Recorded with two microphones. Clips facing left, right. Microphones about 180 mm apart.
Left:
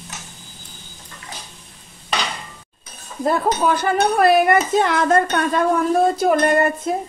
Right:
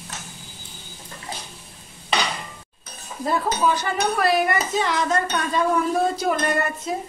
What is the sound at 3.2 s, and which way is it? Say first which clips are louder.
Speech: left 4 dB; 55° left (ahead or behind).